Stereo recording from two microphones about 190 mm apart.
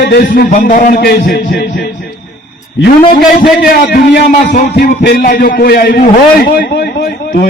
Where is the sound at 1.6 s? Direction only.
60° left (ahead or behind).